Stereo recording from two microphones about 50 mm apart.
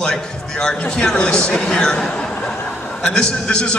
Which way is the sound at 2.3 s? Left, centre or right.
Centre.